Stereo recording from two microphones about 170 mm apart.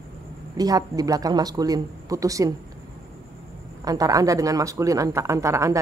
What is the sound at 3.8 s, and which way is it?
Speech, 20° right (ahead or behind).